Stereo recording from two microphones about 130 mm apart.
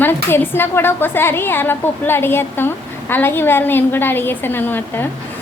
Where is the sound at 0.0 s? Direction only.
15° left (ahead or behind).